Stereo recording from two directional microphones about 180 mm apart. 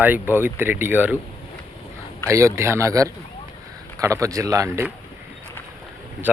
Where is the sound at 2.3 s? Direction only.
15° right (ahead or behind).